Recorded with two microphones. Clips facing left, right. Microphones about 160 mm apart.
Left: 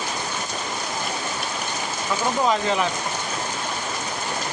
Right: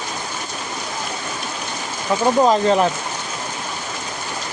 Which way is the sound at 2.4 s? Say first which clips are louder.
Right 4 dB; 40° right (ahead or behind).